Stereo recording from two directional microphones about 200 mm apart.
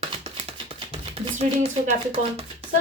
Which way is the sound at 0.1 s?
25° right (ahead or behind).